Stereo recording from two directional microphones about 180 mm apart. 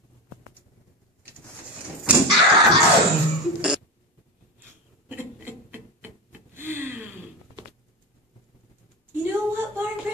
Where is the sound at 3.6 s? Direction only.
5° right (ahead or behind).